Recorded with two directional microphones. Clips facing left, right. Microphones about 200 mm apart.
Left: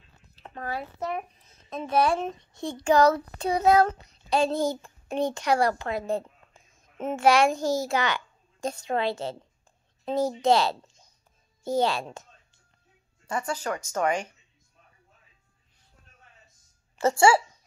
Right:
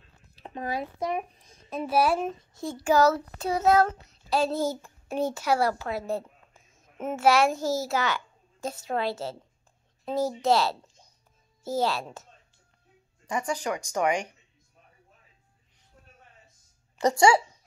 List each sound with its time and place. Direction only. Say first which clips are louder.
0.4 s speech: right 2 dB; 15° right (ahead or behind)
13.3 s speech: right 1 dB; 15° right (ahead or behind)
17.0 s speech: even; 20° right (ahead or behind)